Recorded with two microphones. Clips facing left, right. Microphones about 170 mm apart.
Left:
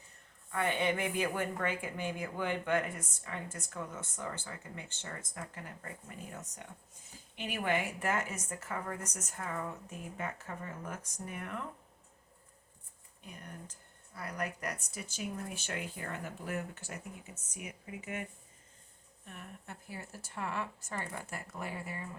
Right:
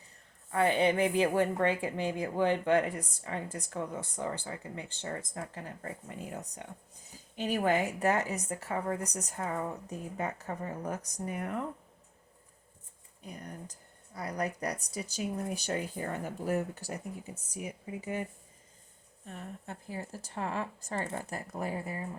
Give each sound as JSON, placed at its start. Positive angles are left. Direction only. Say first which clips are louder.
{"t": 0.5, "sound": "speech", "louder": "right 6 dB", "side_deg": -30}
{"t": 13.2, "sound": "speech", "louder": "right 5 dB", "side_deg": -35}
{"t": 20.0, "sound": "speech", "louder": "right 4 dB", "side_deg": -35}